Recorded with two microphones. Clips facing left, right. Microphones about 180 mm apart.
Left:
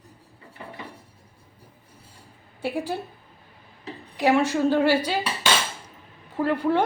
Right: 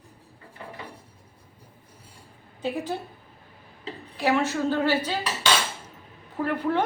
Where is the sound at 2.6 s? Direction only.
10° left (ahead or behind).